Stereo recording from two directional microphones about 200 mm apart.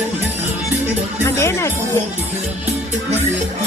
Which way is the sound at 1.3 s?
15° left (ahead or behind).